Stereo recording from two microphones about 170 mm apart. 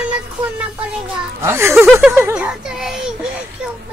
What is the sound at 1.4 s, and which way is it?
A child's voice, 15° right (ahead or behind).